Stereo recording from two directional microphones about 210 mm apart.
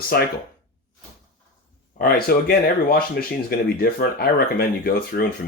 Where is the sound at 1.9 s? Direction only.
45° left (ahead or behind).